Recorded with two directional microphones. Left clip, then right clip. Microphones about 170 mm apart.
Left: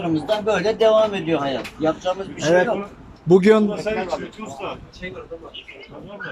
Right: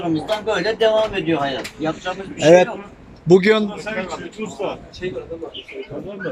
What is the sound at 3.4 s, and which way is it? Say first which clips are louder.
Speech: left 1 dB; 10° left (ahead or behind).